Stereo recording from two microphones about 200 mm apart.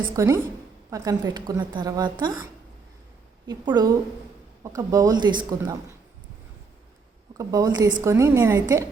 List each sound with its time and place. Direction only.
0.2 s a woman's voice: 15° right (ahead or behind)
7.3 s a woman's voice: 20° right (ahead or behind)